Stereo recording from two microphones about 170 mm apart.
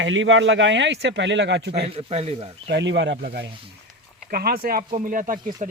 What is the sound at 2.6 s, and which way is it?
Speech, 85° right.